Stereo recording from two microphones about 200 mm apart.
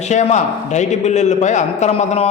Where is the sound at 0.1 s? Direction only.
35° left (ahead or behind).